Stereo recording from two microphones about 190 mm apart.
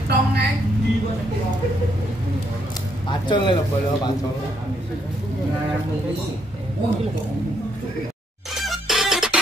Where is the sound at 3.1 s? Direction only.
25° left (ahead or behind).